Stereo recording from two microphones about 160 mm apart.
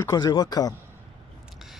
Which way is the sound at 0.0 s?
25° left (ahead or behind).